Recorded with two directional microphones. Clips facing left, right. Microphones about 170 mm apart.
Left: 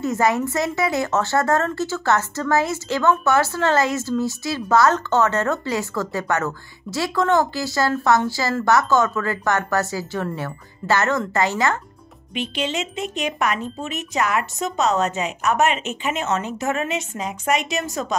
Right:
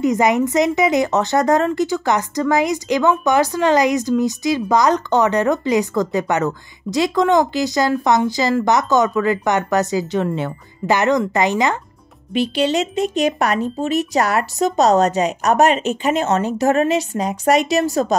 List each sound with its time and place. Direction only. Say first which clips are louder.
0.0 s speech: right 4 dB; 15° right (ahead or behind)
12.4 s speech: right 8 dB; 35° right (ahead or behind)